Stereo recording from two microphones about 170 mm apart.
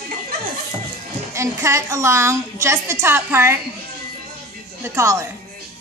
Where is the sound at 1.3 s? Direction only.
15° right (ahead or behind).